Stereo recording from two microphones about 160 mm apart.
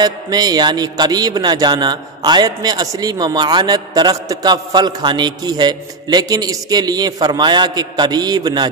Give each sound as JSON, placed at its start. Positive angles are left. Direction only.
{"t": 0.0, "sound": "a man's voice", "side_deg": -25}